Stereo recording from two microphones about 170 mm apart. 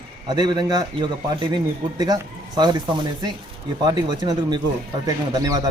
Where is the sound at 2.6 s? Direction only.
25° right (ahead or behind).